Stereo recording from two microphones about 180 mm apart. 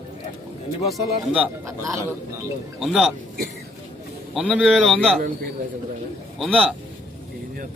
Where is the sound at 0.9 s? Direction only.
5° right (ahead or behind).